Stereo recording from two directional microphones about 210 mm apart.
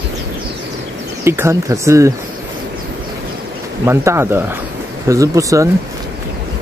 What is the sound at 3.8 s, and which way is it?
Speech, 10° right (ahead or behind).